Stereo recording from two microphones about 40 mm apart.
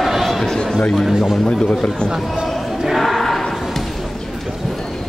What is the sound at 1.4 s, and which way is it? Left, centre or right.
Speech, left.